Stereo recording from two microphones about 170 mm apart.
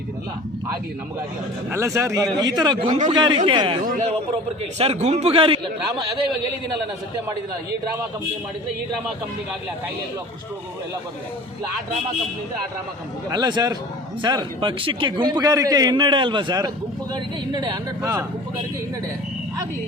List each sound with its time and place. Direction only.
1.7 s a man's voice: 15° right (ahead or behind)
2.8 s speech: 40° right (ahead or behind)
3.1 s a man's voice: 25° right (ahead or behind)
3.8 s speech: 50° right (ahead or behind)
4.8 s a man's voice: 40° right (ahead or behind)
13.3 s a man's voice: 25° right (ahead or behind)